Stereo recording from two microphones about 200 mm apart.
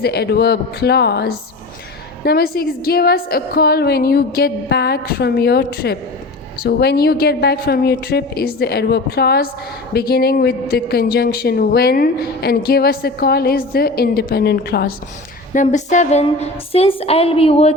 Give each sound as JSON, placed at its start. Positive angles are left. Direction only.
{"t": 0.0, "sound": "a woman's voice", "side_deg": 55}
{"t": 15.5, "sound": "a woman's voice", "side_deg": 35}